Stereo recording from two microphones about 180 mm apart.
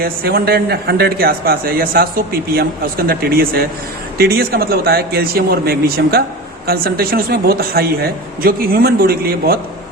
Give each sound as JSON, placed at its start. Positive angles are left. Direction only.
{"t": 0.0, "sound": "a man's voice", "side_deg": -60}